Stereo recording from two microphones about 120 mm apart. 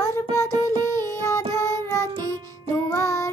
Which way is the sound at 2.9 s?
25° left (ahead or behind).